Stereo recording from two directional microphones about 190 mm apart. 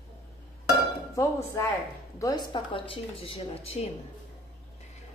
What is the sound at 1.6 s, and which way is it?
A woman's voice, 15° left (ahead or behind).